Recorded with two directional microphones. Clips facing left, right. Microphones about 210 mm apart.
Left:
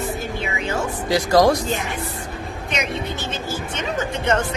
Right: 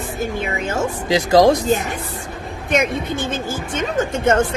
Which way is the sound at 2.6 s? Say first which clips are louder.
Right 7 dB; 50° right (ahead or behind).